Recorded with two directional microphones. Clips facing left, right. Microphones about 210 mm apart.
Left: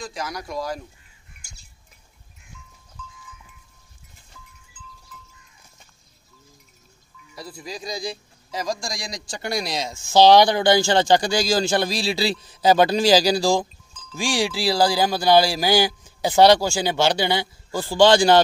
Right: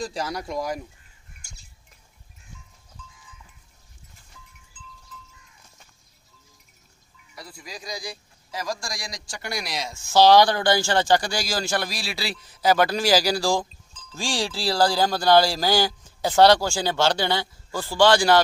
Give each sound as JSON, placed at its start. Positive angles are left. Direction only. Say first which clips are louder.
{"t": 0.0, "sound": "speech", "louder": "right 2 dB", "side_deg": -30}
{"t": 7.3, "sound": "speech", "louder": "left 6 dB", "side_deg": 25}